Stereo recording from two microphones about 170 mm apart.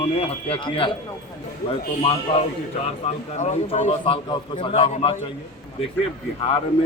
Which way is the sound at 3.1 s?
45° left (ahead or behind).